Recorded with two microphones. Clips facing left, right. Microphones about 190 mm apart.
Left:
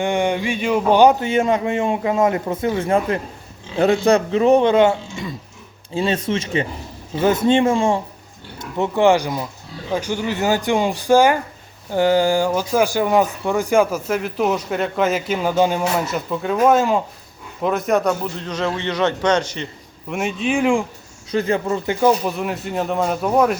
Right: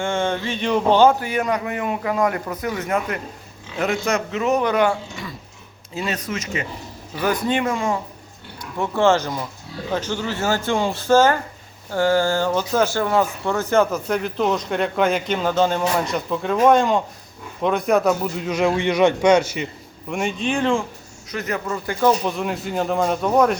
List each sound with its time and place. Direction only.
0.0 s speech: 15° left (ahead or behind)
8.5 s a man's voice: 20° left (ahead or behind); by 19.6 s 10° right (ahead or behind)
20.1 s speech: centre (ahead or behind)
21.2 s speech: 30° left (ahead or behind)
22.0 s speech: 5° left (ahead or behind)